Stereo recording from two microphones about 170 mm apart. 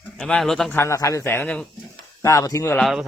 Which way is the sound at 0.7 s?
15° left (ahead or behind).